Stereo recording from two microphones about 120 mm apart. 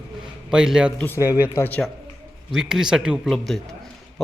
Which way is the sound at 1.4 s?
20° left (ahead or behind).